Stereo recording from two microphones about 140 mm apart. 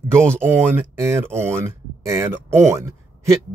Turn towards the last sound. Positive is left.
turn(degrees=-20)  # may be behind; listen again after turning